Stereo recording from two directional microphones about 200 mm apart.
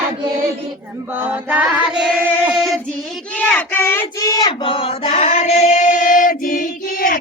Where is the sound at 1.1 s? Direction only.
10° right (ahead or behind).